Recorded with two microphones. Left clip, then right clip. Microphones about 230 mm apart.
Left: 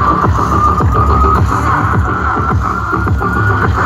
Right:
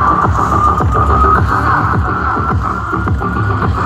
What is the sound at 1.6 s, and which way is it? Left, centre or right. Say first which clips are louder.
Music: even; centre.